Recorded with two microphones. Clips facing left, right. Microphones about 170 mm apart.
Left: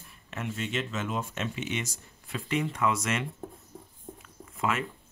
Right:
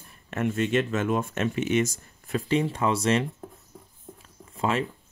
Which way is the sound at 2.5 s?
30° right (ahead or behind).